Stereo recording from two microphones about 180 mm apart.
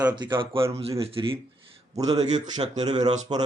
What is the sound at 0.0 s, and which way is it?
A man's voice, 25° right (ahead or behind).